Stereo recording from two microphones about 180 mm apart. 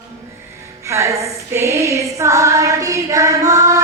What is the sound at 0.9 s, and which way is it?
Female singing, 15° right (ahead or behind).